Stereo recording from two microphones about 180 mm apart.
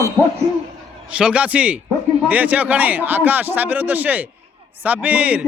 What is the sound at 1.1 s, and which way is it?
Speech, 5° right (ahead or behind).